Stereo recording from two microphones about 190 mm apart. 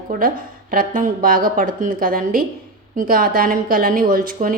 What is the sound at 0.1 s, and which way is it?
A woman's voice, 45° right (ahead or behind).